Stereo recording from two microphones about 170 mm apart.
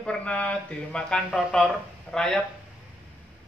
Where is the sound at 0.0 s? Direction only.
5° left (ahead or behind).